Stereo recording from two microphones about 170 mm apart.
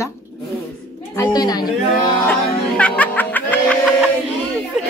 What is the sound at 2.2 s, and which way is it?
Music, 10° left (ahead or behind).